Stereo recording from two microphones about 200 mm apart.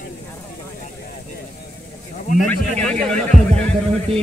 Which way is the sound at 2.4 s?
5° left (ahead or behind).